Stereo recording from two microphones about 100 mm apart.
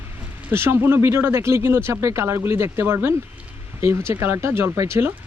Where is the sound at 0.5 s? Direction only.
25° right (ahead or behind).